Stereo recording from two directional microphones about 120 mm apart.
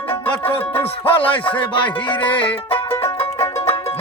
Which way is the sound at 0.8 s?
50° left (ahead or behind).